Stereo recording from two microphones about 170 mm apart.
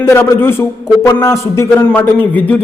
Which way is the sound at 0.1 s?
15° left (ahead or behind).